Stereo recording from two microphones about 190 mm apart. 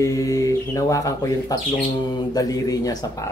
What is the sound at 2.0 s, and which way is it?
Speech, 20° left (ahead or behind).